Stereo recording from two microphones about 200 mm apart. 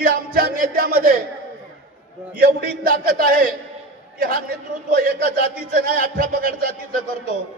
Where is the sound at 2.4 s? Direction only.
45° right (ahead or behind).